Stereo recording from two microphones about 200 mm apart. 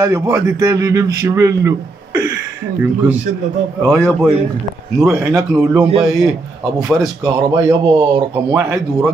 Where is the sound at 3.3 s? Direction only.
40° right (ahead or behind).